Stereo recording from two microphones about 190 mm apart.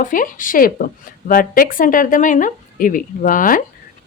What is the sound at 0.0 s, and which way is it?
Speech, 45° left (ahead or behind).